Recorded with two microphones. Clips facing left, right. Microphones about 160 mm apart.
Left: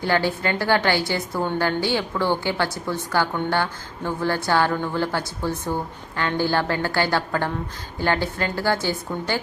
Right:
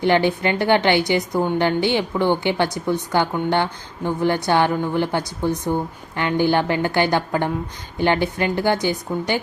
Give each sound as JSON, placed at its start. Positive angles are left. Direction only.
{"t": 0.0, "sound": "a woman's voice", "side_deg": -20}